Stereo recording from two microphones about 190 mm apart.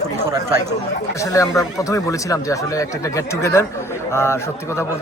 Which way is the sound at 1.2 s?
15° left (ahead or behind).